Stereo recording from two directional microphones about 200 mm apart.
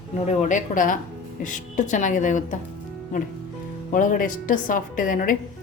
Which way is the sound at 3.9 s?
40° left (ahead or behind).